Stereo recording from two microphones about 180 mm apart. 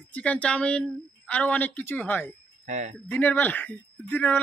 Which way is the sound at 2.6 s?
40° right (ahead or behind).